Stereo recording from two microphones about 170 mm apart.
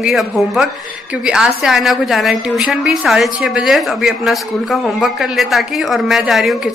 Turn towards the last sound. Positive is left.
turn(degrees=0)  # may be behind; listen again after turning